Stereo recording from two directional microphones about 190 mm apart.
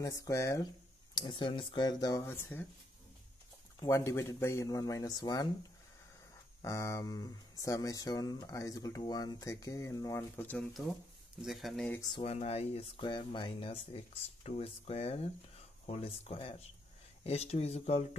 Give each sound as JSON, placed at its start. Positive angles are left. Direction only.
{"t": 0.0, "sound": "speech", "side_deg": 15}
{"t": 3.8, "sound": "speech", "side_deg": 15}
{"t": 6.6, "sound": "speech", "side_deg": 15}
{"t": 12.0, "sound": "speech", "side_deg": 25}